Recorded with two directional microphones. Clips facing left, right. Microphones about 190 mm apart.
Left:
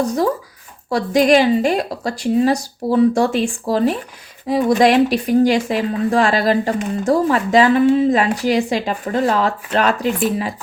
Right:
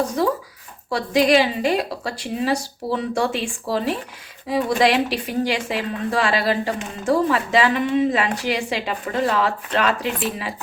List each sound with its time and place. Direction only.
0.9 s speech: 45° left (ahead or behind)